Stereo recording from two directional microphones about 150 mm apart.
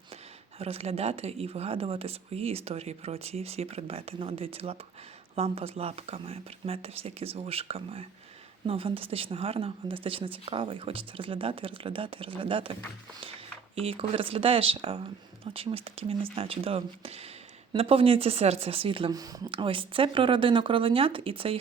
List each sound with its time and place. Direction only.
0.6 s speech: 40° right (ahead or behind)
13.7 s speech: 40° right (ahead or behind)